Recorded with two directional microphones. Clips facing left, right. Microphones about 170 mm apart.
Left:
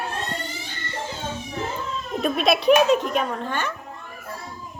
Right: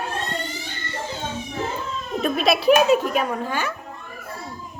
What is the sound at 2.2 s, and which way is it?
Speech, centre (ahead or behind).